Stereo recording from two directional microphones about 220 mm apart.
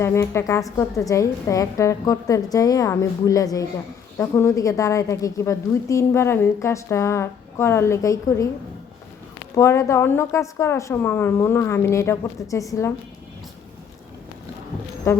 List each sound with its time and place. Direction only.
0.0 s a woman's voice: 10° left (ahead or behind)
9.6 s a woman's voice: 15° left (ahead or behind)
15.1 s a woman's voice: 15° left (ahead or behind)